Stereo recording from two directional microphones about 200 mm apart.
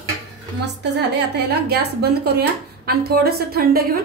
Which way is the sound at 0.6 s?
60° right (ahead or behind).